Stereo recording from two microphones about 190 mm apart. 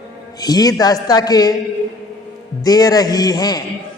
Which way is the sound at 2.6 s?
20° left (ahead or behind).